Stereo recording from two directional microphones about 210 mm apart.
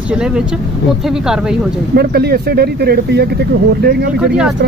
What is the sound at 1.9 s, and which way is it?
Speech, 50° right (ahead or behind).